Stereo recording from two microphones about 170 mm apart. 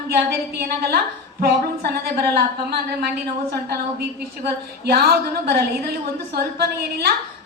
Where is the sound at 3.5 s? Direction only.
65° right (ahead or behind).